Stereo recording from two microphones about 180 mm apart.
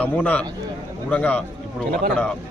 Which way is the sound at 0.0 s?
10° left (ahead or behind).